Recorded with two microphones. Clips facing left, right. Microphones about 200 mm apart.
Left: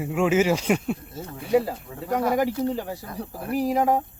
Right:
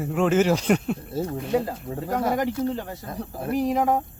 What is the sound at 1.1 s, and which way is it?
Speech, 30° right (ahead or behind).